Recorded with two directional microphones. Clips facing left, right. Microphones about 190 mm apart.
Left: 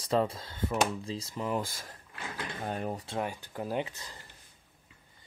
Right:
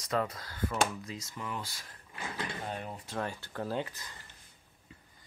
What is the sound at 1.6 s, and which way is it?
Speech, 50° left (ahead or behind).